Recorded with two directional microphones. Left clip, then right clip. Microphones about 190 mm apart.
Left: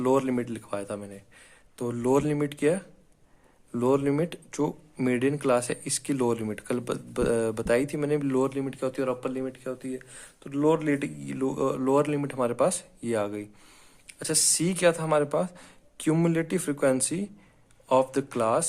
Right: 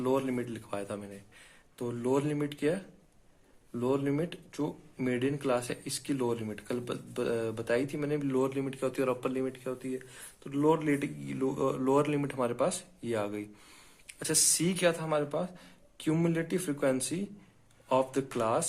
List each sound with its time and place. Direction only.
0.0 s speech: 40° left (ahead or behind)